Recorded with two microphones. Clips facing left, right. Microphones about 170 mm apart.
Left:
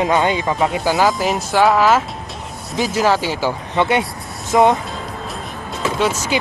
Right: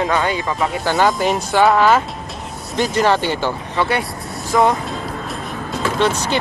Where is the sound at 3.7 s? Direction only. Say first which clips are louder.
Left 3 dB; 20° left (ahead or behind).